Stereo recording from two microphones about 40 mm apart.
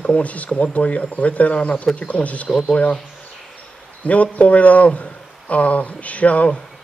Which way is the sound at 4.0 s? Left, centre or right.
Left.